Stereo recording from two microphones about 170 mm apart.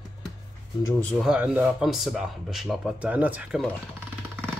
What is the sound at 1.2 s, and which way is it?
Speech, 10° right (ahead or behind).